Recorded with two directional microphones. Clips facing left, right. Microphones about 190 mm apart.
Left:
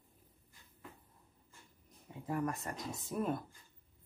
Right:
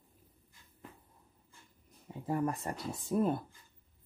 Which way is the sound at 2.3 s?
30° right (ahead or behind).